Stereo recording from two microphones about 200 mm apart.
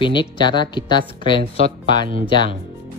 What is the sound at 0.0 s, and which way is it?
A woman's voice, 25° left (ahead or behind).